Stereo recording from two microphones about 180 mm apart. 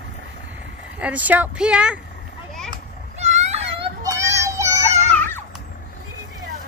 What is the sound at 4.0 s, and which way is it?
Children playing, 15° right (ahead or behind).